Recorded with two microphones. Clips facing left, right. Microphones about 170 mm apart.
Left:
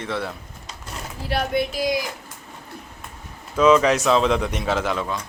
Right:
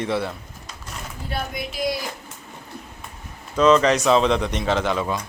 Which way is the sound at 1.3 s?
70° left (ahead or behind).